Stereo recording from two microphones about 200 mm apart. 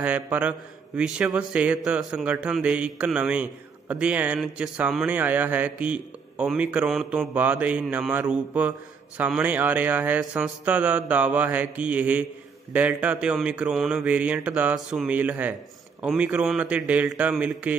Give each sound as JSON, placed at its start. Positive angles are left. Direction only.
{"t": 0.0, "sound": "a man's voice", "side_deg": -5}